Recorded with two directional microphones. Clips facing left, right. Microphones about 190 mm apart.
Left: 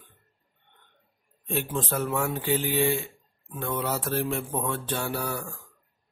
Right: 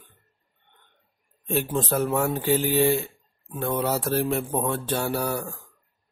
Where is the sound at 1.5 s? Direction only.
40° right (ahead or behind).